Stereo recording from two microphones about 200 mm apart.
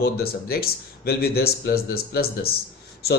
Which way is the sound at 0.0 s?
50° left (ahead or behind).